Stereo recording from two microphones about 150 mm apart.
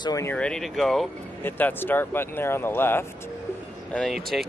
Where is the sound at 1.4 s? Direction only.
15° left (ahead or behind).